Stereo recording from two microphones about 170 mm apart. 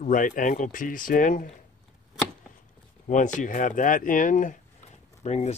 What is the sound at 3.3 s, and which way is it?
Speech, 50° left (ahead or behind).